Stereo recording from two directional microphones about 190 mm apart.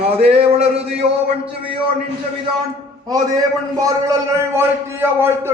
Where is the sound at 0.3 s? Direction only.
30° right (ahead or behind).